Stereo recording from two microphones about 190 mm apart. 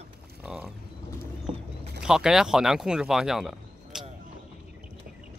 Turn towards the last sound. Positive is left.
turn(degrees=0)  # may be behind; listen again after turning